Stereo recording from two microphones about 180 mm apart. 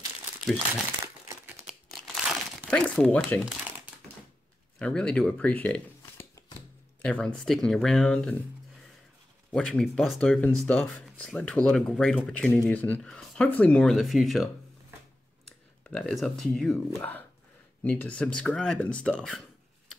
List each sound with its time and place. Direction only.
1.0 s crumpling: 15° right (ahead or behind)
1.7 s crumpling: centre (ahead or behind)
4.7 s speech: 5° left (ahead or behind)
9.5 s speech: 5° left (ahead or behind)